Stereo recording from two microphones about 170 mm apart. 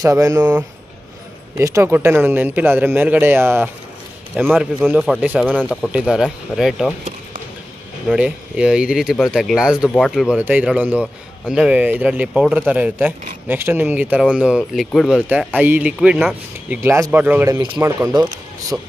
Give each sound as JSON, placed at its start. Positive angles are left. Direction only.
{"t": 0.0, "sound": "a man's voice", "side_deg": -20}
{"t": 8.1, "sound": "a man's voice", "side_deg": -5}